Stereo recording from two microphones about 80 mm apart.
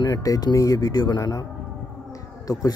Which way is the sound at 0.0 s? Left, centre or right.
Left.